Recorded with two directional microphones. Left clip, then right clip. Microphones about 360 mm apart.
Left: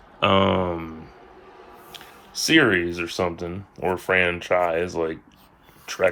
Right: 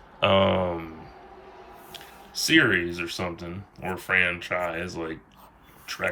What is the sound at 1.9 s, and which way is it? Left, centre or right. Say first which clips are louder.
Speech: left 2 dB; centre.